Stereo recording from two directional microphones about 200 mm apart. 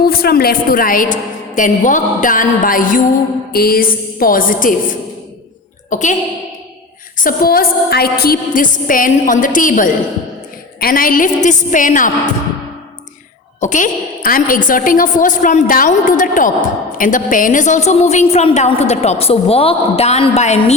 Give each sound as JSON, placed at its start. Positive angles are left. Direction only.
{"t": 0.0, "sound": "a woman's voice", "side_deg": 50}
{"t": 7.3, "sound": "a woman's voice", "side_deg": 50}
{"t": 13.6, "sound": "a woman's voice", "side_deg": 40}